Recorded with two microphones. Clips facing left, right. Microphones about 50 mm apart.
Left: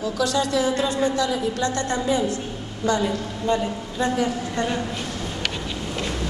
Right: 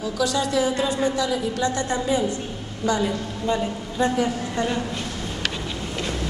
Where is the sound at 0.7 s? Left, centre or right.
Centre.